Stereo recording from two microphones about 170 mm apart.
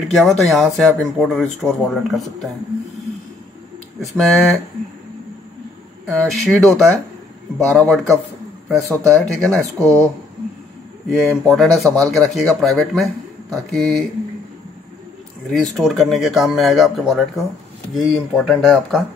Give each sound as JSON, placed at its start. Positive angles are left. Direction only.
{"t": 0.1, "sound": "speech", "side_deg": 0}
{"t": 4.0, "sound": "speech", "side_deg": 0}
{"t": 6.0, "sound": "speech", "side_deg": 0}
{"t": 9.6, "sound": "speech", "side_deg": -15}
{"t": 11.1, "sound": "speech", "side_deg": 0}
{"t": 15.5, "sound": "speech", "side_deg": 0}